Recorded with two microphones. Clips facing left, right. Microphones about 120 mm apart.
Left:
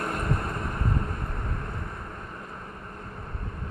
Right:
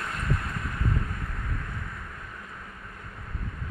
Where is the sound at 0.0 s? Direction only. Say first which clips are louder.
Left 3 dB; 45° left (ahead or behind).